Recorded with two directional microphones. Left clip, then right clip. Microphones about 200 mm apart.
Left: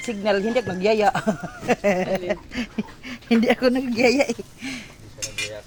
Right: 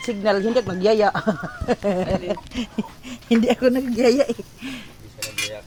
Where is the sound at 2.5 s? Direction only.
5° right (ahead or behind).